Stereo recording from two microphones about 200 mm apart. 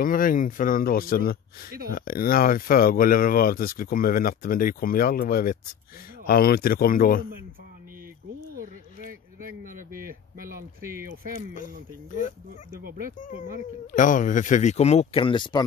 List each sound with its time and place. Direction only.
0.0 s speech: 45° left (ahead or behind)
8.5 s a sound: 45° right (ahead or behind)
13.9 s speech: 40° left (ahead or behind); by 15.6 s 25° left (ahead or behind)